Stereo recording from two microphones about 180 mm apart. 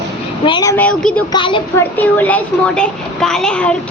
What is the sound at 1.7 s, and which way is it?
A child's voice, 10° left (ahead or behind).